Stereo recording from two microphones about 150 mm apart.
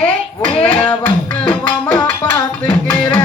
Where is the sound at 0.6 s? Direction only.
10° left (ahead or behind).